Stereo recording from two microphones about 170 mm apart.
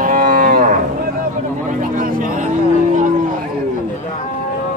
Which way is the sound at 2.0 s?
55° right (ahead or behind).